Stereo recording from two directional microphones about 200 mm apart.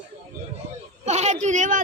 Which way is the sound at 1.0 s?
35° right (ahead or behind).